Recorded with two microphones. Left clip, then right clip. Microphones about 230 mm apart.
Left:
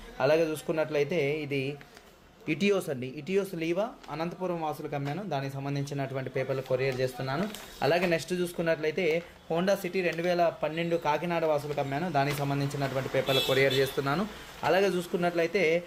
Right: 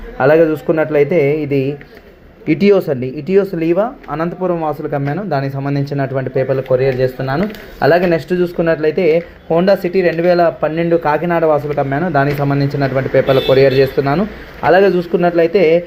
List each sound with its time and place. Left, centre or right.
0.2 s speech: left